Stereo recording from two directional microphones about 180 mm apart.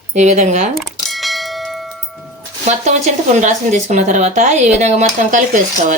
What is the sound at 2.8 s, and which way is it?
Speech, 40° right (ahead or behind).